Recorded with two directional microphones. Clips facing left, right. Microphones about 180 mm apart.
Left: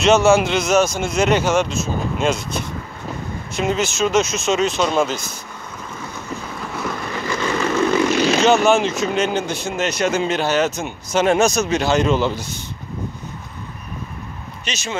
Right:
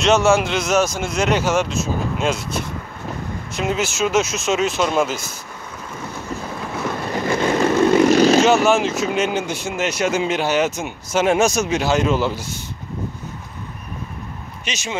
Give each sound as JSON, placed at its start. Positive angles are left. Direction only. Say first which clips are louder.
{"t": 0.0, "sound": "speech", "louder": "left 2 dB", "side_deg": 0}
{"t": 7.2, "sound": "vehicle", "louder": "right 4 dB", "side_deg": -50}
{"t": 7.6, "sound": "vehicle", "louder": "right 4 dB", "side_deg": -35}
{"t": 8.4, "sound": "speech", "louder": "even", "side_deg": -5}
{"t": 14.6, "sound": "speech", "louder": "even", "side_deg": -10}